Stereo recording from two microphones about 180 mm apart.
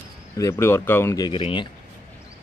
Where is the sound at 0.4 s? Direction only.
15° left (ahead or behind).